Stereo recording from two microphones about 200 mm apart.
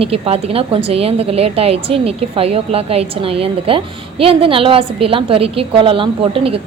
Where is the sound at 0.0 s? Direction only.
30° right (ahead or behind).